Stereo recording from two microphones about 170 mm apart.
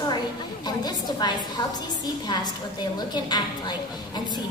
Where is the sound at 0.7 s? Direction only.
25° left (ahead or behind).